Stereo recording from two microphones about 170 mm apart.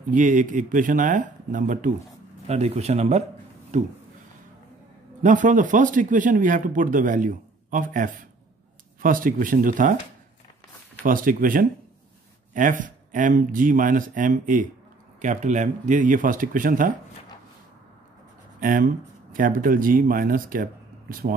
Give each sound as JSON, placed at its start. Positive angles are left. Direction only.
{"t": 0.1, "sound": "speech", "side_deg": -50}
{"t": 2.4, "sound": "speech", "side_deg": -40}
{"t": 5.2, "sound": "speech", "side_deg": -50}
{"t": 11.1, "sound": "speech", "side_deg": -55}
{"t": 18.6, "sound": "speech", "side_deg": -50}